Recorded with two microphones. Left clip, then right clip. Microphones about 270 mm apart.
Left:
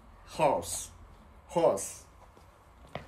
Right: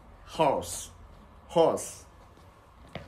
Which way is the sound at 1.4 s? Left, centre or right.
Centre.